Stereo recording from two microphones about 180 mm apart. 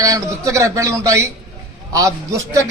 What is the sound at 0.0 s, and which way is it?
A man's voice, 20° right (ahead or behind).